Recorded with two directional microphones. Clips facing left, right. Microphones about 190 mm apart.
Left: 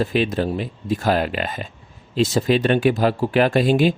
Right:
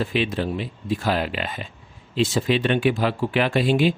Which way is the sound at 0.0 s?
40° left (ahead or behind).